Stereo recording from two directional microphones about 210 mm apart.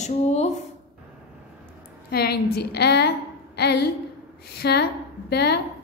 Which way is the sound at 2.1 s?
50° left (ahead or behind).